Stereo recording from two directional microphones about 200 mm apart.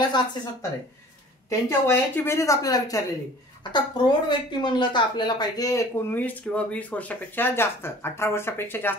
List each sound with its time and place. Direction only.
0.1 s speech: 20° left (ahead or behind)
1.7 s a woman's voice: 15° left (ahead or behind)